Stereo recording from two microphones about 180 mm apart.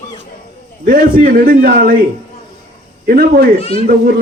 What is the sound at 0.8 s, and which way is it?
A man's voice, 50° right (ahead or behind).